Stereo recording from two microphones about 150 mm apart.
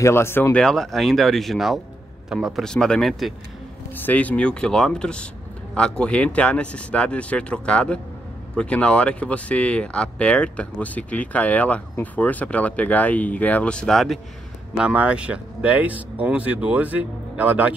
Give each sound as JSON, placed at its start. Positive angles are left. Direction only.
{"t": 0.0, "sound": "speech", "side_deg": 15}
{"t": 3.9, "sound": "speech", "side_deg": 10}